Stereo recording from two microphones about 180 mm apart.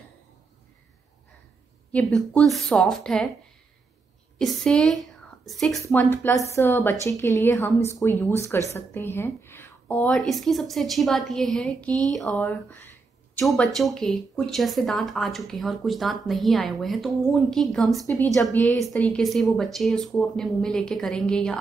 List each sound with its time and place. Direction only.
1.9 s speech: 5° left (ahead or behind)
4.4 s a woman's voice: centre (ahead or behind)
5.9 s a woman's voice: 10° left (ahead or behind)